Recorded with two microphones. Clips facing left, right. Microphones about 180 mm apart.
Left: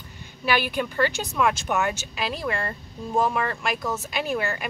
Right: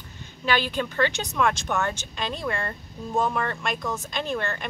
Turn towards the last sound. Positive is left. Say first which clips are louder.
# left 2 dB
turn(degrees=5)  # may be behind; listen again after turning